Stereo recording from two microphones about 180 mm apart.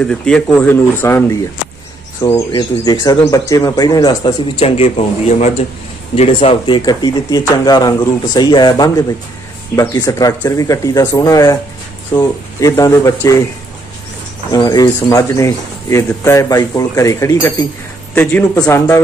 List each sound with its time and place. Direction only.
0.0 s speech: 5° left (ahead or behind)
14.5 s speech: 20° left (ahead or behind)